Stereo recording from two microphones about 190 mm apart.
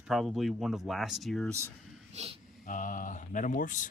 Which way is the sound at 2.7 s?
45° left (ahead or behind).